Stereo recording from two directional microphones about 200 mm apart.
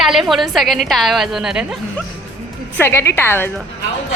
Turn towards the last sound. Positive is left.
turn(degrees=10)  # may be behind; listen again after turning